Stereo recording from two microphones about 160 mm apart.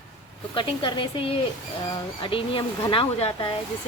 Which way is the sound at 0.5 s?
30° left (ahead or behind).